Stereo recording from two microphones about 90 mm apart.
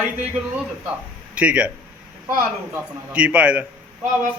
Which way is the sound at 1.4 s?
15° right (ahead or behind).